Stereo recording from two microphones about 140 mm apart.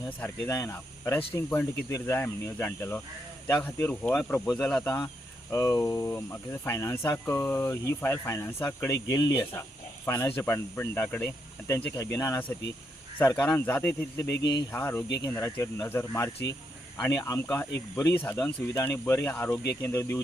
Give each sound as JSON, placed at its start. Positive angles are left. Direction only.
{"t": 0.4, "sound": "speech", "side_deg": 20}
{"t": 9.0, "sound": "speech", "side_deg": 25}
{"t": 10.1, "sound": "speech", "side_deg": 15}
{"t": 13.3, "sound": "speech", "side_deg": 10}